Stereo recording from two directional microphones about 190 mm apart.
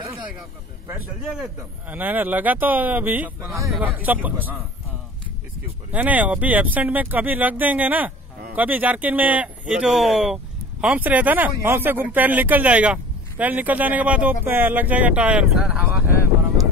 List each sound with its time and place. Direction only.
1.9 s speech: 10° right (ahead or behind)
5.9 s speech: 10° right (ahead or behind)